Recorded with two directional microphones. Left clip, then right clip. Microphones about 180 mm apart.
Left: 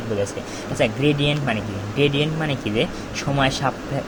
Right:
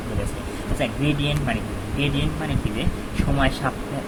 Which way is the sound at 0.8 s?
35° left (ahead or behind).